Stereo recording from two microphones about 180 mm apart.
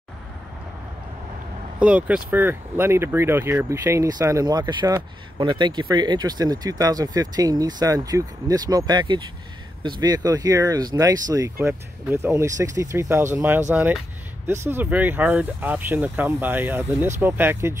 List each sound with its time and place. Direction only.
1.8 s speech: 5° right (ahead or behind)